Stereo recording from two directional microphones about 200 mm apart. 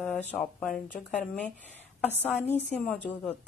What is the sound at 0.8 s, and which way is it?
Speech, 40° left (ahead or behind).